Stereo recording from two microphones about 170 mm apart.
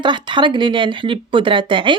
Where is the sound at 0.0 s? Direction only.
25° right (ahead or behind).